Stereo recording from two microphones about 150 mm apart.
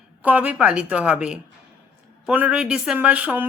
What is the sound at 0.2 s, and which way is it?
Speech, 10° right (ahead or behind).